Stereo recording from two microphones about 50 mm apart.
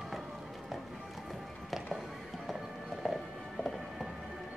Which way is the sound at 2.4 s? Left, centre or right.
Centre.